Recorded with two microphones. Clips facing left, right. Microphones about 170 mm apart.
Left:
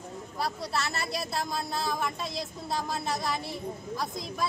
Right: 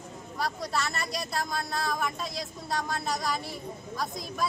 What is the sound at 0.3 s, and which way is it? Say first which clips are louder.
Speech: right 1 dB; centre (ahead or behind).